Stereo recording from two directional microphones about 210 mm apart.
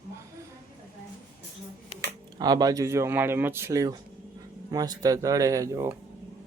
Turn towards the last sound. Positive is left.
turn(degrees=-15)  # may be behind; listen again after turning